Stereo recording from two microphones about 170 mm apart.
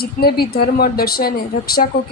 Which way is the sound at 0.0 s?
65° left (ahead or behind).